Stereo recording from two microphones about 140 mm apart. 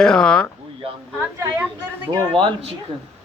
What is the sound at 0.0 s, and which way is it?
Speech, 5° left (ahead or behind).